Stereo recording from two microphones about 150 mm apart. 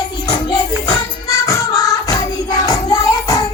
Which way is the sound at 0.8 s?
20° left (ahead or behind).